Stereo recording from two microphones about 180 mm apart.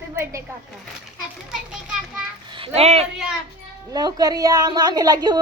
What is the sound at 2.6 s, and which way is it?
Speech, 35° right (ahead or behind).